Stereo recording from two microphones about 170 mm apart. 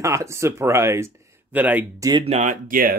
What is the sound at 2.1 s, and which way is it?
Speech, 35° right (ahead or behind).